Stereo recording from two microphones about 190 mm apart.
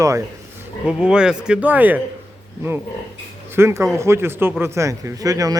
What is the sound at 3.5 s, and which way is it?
A man's voice, 15° right (ahead or behind).